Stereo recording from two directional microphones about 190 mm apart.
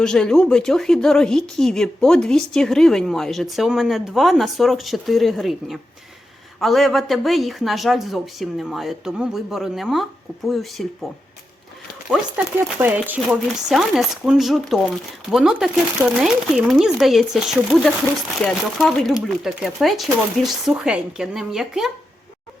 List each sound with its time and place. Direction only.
0.0 s speech: 5° left (ahead or behind)
12.1 s speech: 5° right (ahead or behind)